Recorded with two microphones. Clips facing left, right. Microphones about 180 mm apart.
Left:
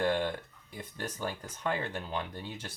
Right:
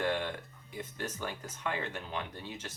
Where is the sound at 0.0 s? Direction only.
35° left (ahead or behind).